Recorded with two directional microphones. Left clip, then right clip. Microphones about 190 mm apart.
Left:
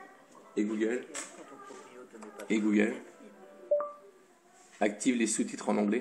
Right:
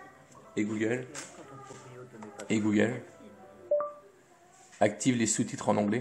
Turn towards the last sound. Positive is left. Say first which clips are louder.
# right 2 dB
turn(degrees=-15)  # may be behind; listen again after turning